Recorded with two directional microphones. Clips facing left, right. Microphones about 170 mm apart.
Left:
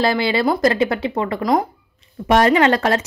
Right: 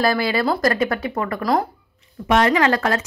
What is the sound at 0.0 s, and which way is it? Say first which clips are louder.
A woman's voice: left 2 dB; 25° left (ahead or behind).